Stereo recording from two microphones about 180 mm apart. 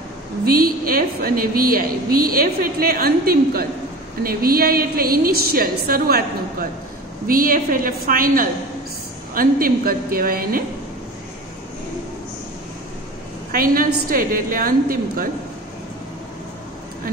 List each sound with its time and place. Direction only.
0.5 s a woman's voice: 55° right (ahead or behind)
7.2 s a woman's voice: 50° right (ahead or behind)
13.5 s a woman's voice: 55° right (ahead or behind)